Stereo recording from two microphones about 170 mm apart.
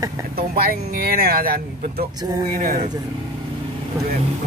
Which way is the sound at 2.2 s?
20° right (ahead or behind).